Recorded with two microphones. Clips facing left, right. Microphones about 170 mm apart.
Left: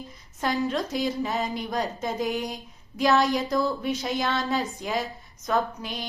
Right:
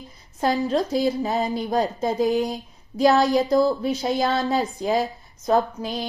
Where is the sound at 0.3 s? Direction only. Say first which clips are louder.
Right 5 dB; 30° right (ahead or behind).